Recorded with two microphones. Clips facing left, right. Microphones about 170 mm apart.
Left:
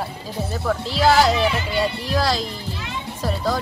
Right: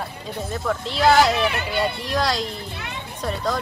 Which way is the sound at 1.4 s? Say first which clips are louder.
Left 2 dB; 60° right (ahead or behind).